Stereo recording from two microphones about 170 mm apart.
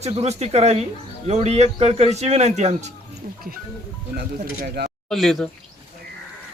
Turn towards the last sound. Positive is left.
turn(degrees=0)  # may be behind; listen again after turning